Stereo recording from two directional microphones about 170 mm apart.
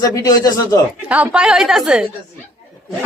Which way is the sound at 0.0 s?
20° left (ahead or behind).